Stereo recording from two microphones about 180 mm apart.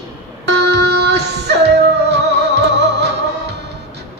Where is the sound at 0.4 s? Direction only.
70° right (ahead or behind).